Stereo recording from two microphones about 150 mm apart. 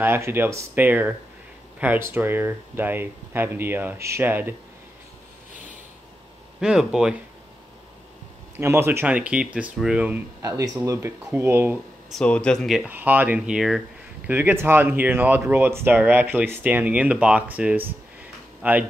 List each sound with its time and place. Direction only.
0.0 s speech: 15° right (ahead or behind)
6.6 s speech: 5° right (ahead or behind)
8.5 s speech: 15° right (ahead or behind)
10.4 s speech: 25° right (ahead or behind)
12.1 s speech: 5° left (ahead or behind)
14.3 s speech: 15° right (ahead or behind)